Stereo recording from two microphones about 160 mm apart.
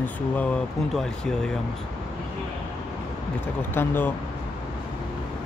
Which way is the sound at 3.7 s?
15° left (ahead or behind).